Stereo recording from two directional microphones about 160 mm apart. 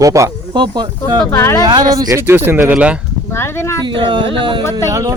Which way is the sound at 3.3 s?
15° left (ahead or behind).